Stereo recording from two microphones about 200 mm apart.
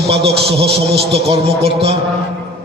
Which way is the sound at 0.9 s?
55° right (ahead or behind).